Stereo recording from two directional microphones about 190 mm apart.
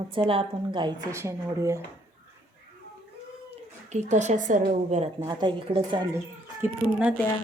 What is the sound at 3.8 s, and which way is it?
A woman's voice, 40° right (ahead or behind).